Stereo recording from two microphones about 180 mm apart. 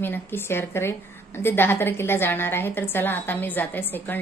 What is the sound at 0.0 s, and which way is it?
A woman's voice, 10° left (ahead or behind).